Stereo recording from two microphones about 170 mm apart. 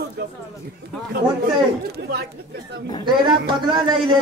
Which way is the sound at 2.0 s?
80° right.